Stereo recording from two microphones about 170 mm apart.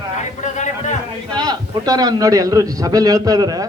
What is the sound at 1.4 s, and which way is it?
A man's voice, 20° right (ahead or behind).